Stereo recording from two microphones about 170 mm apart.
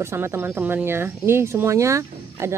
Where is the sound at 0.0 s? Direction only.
15° right (ahead or behind).